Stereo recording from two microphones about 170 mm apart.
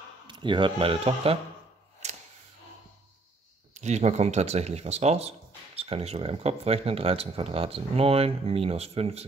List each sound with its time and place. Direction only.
0.3 s speech: 30° right (ahead or behind)
2.0 s a sound: 40° right (ahead or behind)
3.7 s speech: 40° right (ahead or behind)